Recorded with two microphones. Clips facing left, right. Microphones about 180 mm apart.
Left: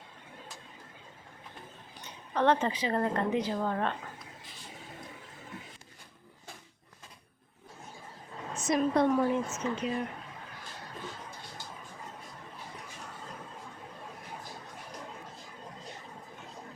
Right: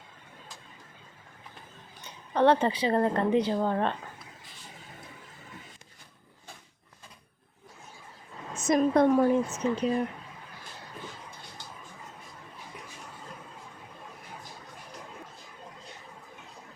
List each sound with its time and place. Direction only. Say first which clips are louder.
2.3 s a woman's voice: right 4 dB; 30° right (ahead or behind)
8.5 s a woman's voice: right 4 dB; 45° right (ahead or behind)